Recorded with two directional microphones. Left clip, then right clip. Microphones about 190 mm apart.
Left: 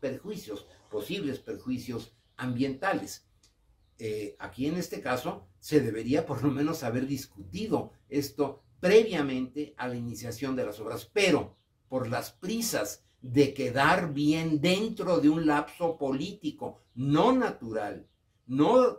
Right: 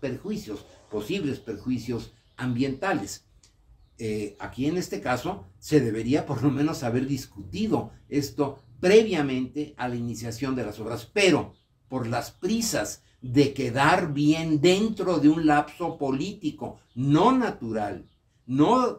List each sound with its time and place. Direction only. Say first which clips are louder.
0.0 s speech: right 3 dB; 5° left (ahead or behind)
4.0 s speech: right 4 dB; 5° left (ahead or behind)